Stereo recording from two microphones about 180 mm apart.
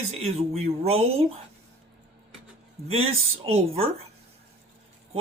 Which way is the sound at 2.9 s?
30° right (ahead or behind).